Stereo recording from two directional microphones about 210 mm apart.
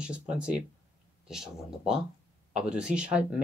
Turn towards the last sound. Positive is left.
turn(degrees=-5)  # may be behind; listen again after turning